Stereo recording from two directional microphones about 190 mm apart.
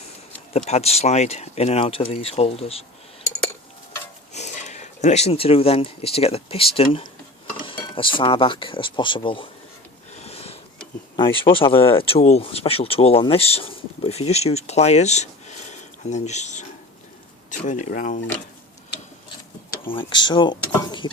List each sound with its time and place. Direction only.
0.5 s speech: 35° left (ahead or behind)
4.3 s speech: 35° left (ahead or behind)
10.1 s sniff: 35° left (ahead or behind)
11.2 s speech: 25° left (ahead or behind)
17.7 s speech: 40° left (ahead or behind)
19.9 s speech: 25° left (ahead or behind)